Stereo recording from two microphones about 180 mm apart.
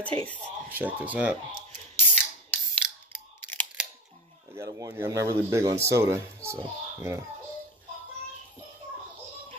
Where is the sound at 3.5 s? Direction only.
10° left (ahead or behind).